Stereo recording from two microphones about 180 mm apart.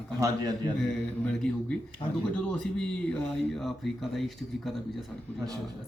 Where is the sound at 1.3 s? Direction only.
5° left (ahead or behind).